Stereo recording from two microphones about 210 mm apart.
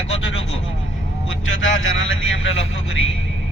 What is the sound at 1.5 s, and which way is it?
Speech, 65° left (ahead or behind).